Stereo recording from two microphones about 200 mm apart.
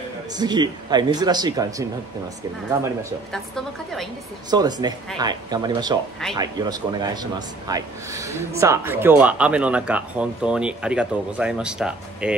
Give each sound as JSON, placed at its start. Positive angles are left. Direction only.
{"t": 0.4, "sound": "speech", "side_deg": -20}
{"t": 3.5, "sound": "a woman's voice", "side_deg": 0}
{"t": 4.5, "sound": "speech", "side_deg": -20}